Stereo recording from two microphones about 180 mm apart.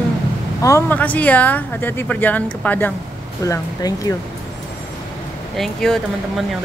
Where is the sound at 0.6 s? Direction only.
15° left (ahead or behind).